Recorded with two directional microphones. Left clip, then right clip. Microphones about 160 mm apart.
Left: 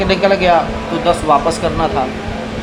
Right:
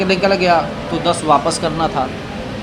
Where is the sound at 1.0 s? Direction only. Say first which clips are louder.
Left 2 dB; 30° right (ahead or behind).